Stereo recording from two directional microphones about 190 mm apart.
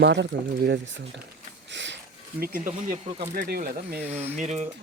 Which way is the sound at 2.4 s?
45° right (ahead or behind).